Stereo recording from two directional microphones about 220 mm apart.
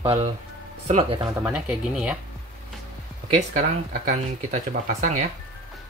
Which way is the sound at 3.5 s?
35° right (ahead or behind).